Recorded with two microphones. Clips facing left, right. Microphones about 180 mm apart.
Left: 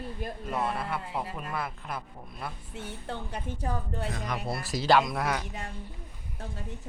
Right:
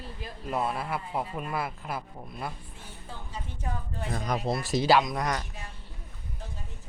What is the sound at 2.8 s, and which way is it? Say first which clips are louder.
Speech: left 9 dB; 70° left (ahead or behind).